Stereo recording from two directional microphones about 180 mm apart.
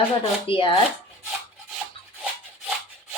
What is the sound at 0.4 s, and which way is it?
Speech, 30° left (ahead or behind).